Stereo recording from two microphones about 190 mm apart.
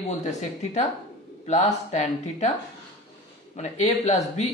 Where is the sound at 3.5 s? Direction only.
35° left (ahead or behind).